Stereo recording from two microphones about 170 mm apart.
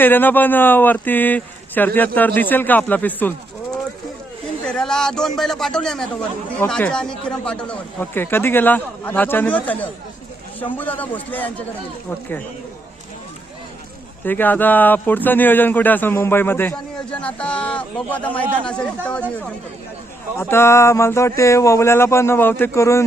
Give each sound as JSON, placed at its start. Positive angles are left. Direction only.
{"t": 0.0, "sound": "a man's voice", "side_deg": 10}
{"t": 14.3, "sound": "speech", "side_deg": 10}
{"t": 20.4, "sound": "speech", "side_deg": 15}